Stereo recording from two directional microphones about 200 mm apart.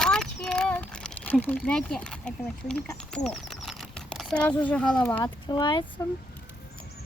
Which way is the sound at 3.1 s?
5° left (ahead or behind).